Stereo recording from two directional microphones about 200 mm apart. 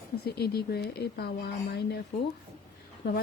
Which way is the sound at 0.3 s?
50° left (ahead or behind).